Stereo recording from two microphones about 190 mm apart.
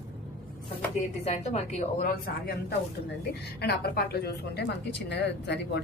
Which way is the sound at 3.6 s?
55° left (ahead or behind).